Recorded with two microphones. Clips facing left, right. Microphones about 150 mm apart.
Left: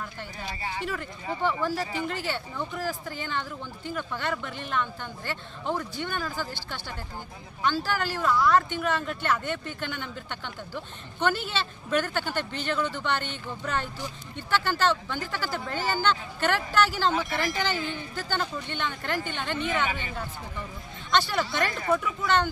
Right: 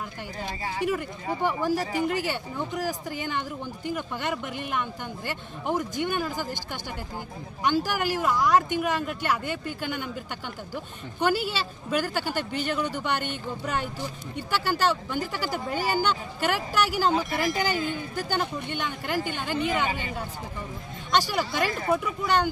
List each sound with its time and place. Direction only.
0.8 s speech: 15° right (ahead or behind)
17.8 s speech: 10° right (ahead or behind)
21.1 s speech: 10° right (ahead or behind)